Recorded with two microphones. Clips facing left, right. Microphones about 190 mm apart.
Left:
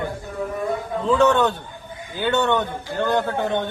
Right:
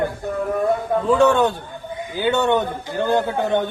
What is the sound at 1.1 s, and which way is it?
A man's voice, 10° right (ahead or behind).